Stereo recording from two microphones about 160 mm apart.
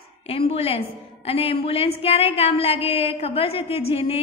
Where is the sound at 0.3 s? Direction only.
40° left (ahead or behind).